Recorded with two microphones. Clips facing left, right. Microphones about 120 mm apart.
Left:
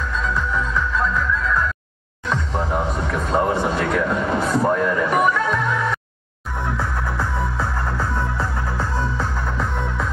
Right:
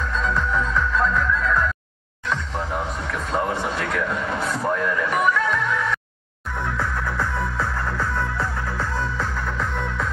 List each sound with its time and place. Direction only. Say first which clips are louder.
0.1 s music: right 1 dB; centre (ahead or behind)
2.2 s music: left 3 dB; 15° left (ahead or behind)
3.7 s a sound: left 5 dB; 20° left (ahead or behind)
4.6 s music: left 4 dB; 25° left (ahead or behind)